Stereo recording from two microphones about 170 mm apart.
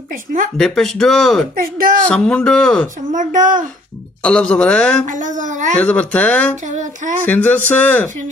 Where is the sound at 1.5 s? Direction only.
60° right (ahead or behind).